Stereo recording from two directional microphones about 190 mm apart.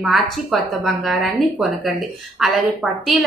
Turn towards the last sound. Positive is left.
turn(degrees=0)  # may be behind; listen again after turning